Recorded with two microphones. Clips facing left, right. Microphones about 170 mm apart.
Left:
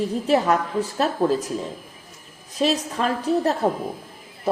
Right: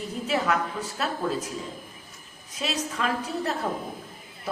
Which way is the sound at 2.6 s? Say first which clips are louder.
Left 7 dB; 35° left (ahead or behind).